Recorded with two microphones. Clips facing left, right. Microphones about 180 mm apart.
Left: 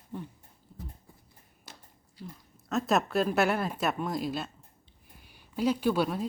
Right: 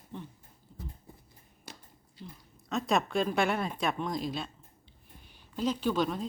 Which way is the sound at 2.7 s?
5° left (ahead or behind).